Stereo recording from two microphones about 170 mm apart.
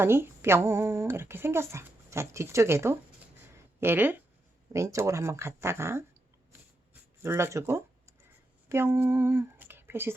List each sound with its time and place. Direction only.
0.0 s speech: 15° right (ahead or behind)
6.5 s a sound: 15° right (ahead or behind)
8.7 s speech: 15° right (ahead or behind)